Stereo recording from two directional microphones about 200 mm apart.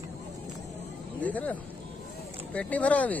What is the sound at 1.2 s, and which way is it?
Speech, 5° left (ahead or behind).